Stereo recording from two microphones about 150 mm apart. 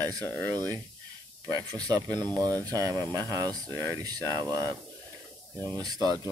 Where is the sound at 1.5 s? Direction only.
25° right (ahead or behind).